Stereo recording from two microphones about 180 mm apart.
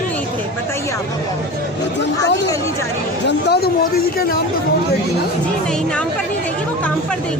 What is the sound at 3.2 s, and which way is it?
Speech, 60° left (ahead or behind).